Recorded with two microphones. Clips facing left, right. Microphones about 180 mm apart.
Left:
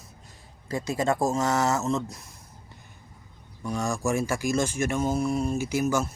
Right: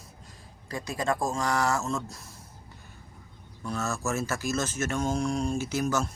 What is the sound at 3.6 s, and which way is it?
Speech, 15° left (ahead or behind).